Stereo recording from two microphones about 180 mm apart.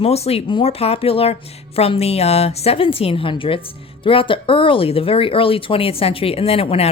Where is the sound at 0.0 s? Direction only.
35° left (ahead or behind).